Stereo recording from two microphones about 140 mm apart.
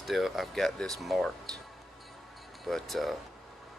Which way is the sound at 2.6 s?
Centre (ahead or behind).